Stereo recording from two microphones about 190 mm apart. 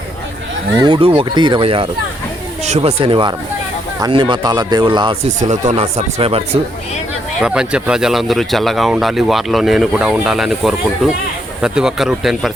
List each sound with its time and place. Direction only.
0.8 s speech: 25° right (ahead or behind)
5.4 s speech: 40° right (ahead or behind)
7.3 s speech: 5° right (ahead or behind)